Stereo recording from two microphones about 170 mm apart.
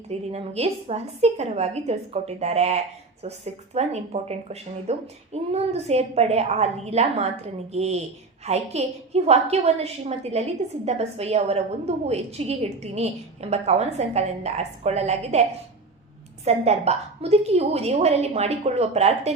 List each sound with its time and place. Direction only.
0.1 s speech: 40° right (ahead or behind)